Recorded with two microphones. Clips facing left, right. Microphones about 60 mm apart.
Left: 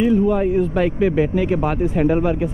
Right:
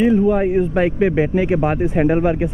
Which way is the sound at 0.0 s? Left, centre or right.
Right.